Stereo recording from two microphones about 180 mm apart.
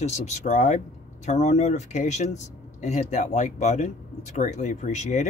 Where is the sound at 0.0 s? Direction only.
40° left (ahead or behind).